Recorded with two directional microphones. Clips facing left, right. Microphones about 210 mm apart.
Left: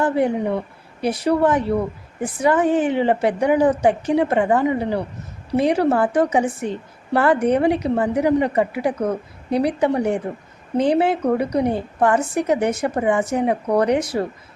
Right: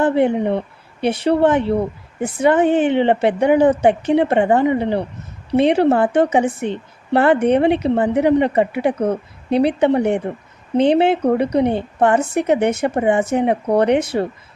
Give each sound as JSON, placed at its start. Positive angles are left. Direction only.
{"t": 0.0, "sound": "a woman's voice", "side_deg": -25}